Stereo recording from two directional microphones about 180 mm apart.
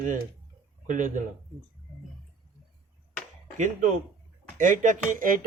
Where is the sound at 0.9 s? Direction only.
45° right (ahead or behind).